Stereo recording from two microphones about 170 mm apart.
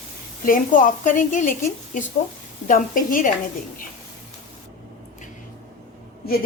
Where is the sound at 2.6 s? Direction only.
50° left (ahead or behind).